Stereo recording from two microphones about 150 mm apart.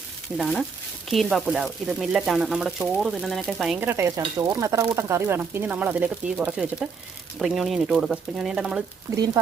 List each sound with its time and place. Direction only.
0.3 s speech: centre (ahead or behind)
3.8 s speech: 15° right (ahead or behind)
9.1 s speech: 25° right (ahead or behind)